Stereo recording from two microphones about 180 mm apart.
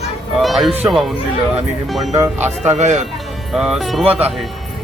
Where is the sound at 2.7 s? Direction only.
40° right (ahead or behind).